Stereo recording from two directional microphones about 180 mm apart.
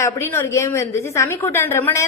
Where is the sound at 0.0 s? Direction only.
15° left (ahead or behind).